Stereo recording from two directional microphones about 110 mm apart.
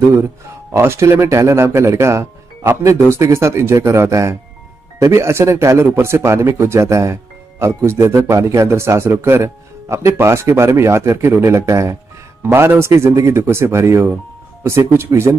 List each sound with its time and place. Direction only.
0.1 s speech: 20° right (ahead or behind)